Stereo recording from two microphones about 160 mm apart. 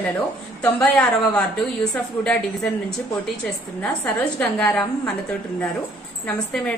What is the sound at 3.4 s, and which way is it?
A woman's voice, 10° left (ahead or behind).